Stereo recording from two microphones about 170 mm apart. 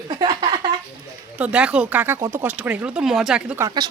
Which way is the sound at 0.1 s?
25° right (ahead or behind).